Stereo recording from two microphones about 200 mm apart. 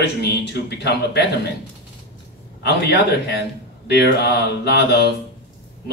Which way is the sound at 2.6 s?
55° left (ahead or behind).